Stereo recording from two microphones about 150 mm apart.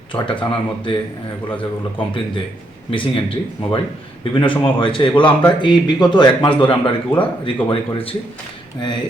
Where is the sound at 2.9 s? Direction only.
35° left (ahead or behind).